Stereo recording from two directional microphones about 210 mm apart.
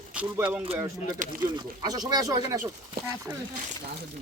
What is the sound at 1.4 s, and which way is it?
Speech, 20° right (ahead or behind).